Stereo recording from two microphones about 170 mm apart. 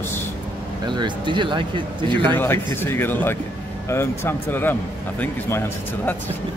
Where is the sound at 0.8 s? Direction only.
25° right (ahead or behind).